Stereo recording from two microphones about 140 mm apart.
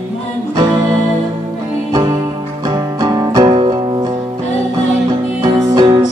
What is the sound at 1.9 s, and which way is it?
Music, 25° right (ahead or behind).